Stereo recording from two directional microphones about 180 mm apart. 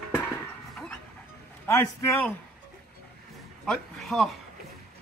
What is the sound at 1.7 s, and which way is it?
Speech, 15° left (ahead or behind).